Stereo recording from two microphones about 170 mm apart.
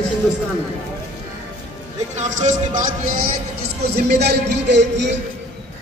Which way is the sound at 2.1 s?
45° right (ahead or behind).